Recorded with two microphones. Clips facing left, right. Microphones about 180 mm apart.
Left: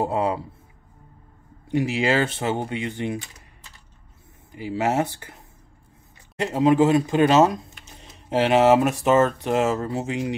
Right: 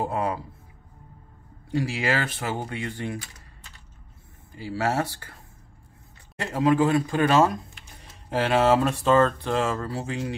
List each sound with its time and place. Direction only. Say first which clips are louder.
0.0 s speech: left 4 dB; 25° left (ahead or behind)
1.7 s speech: left 4 dB; 20° left (ahead or behind)
4.5 s speech: left 3 dB; 20° left (ahead or behind)
7.8 s a sound: left 3 dB; 20° left (ahead or behind)
9.0 s speech: left 2 dB; 20° left (ahead or behind)